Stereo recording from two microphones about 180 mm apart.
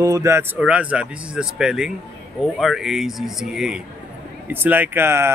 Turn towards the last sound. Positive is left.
turn(degrees=-15)  # may be behind; listen again after turning